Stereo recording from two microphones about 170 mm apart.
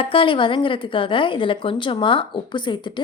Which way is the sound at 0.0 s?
30° left (ahead or behind).